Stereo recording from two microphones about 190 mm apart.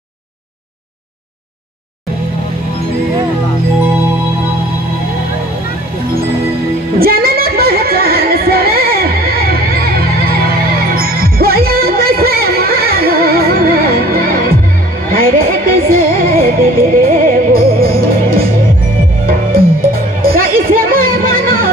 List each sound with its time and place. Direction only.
7.0 s music: 50° right (ahead or behind)